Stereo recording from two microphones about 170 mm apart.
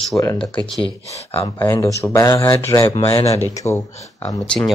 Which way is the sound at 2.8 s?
30° left (ahead or behind).